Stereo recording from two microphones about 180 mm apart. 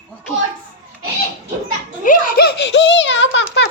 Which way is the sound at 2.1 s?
60° left (ahead or behind).